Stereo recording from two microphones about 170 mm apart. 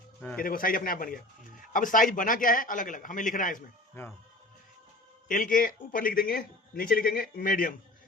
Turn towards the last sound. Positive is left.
turn(degrees=55)  # may be behind; listen again after turning